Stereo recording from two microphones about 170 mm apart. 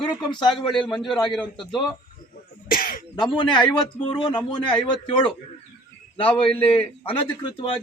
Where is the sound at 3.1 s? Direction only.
25° left (ahead or behind).